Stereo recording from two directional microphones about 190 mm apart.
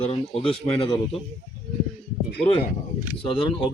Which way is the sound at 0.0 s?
30° left (ahead or behind).